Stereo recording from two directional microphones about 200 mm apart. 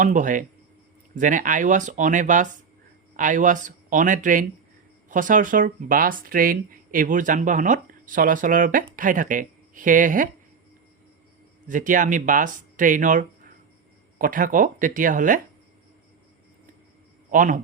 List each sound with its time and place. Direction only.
0.0 s speech: 40° right (ahead or behind)
11.7 s speech: 40° right (ahead or behind)
17.3 s speech: 40° right (ahead or behind)